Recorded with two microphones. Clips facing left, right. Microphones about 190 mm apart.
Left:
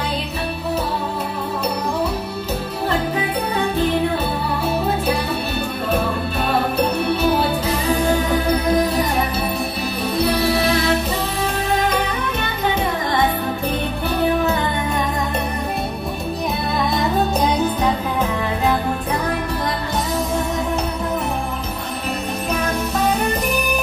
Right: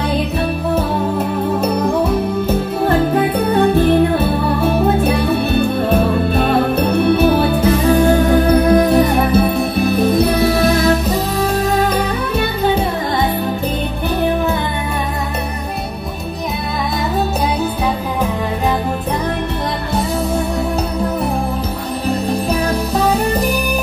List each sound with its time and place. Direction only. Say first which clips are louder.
8.7 s music: right 6 dB; 55° right (ahead or behind)